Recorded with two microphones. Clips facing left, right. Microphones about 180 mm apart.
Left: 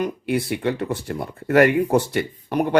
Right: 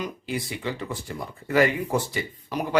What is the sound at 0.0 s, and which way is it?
Speech, 60° left (ahead or behind).